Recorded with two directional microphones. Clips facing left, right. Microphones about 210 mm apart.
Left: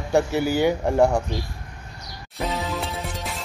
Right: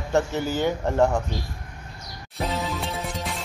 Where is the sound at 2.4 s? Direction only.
Centre (ahead or behind).